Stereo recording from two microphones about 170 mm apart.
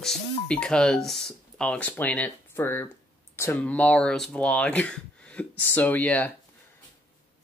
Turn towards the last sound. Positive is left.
turn(degrees=10)  # may be behind; listen again after turning